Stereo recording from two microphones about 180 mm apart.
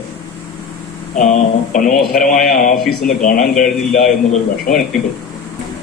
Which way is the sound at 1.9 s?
Centre (ahead or behind).